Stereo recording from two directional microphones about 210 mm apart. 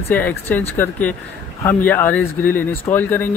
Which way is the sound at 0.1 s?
10° left (ahead or behind).